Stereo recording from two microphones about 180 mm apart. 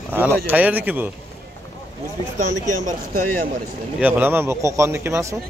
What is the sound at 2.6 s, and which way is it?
Speech, 45° right (ahead or behind).